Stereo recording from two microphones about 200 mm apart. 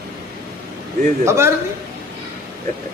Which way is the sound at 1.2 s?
15° right (ahead or behind).